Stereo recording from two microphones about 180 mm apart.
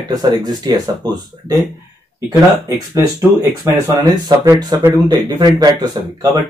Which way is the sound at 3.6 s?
20° right (ahead or behind).